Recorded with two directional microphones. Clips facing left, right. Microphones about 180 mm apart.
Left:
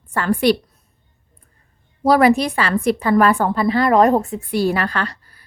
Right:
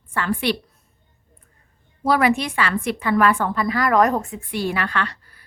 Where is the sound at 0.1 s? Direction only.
40° left (ahead or behind).